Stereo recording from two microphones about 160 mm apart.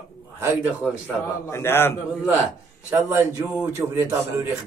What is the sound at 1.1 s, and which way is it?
Speech, 15° left (ahead or behind).